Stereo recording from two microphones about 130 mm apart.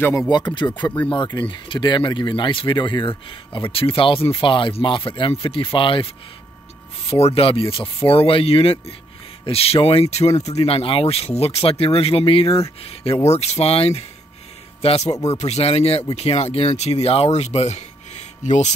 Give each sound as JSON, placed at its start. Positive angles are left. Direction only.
{"t": 0.6, "sound": "speech", "side_deg": 35}
{"t": 7.1, "sound": "speech", "side_deg": 50}